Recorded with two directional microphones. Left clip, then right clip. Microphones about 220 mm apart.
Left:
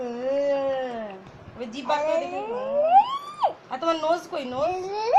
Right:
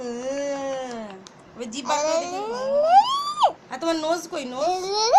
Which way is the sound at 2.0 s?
15° right (ahead or behind).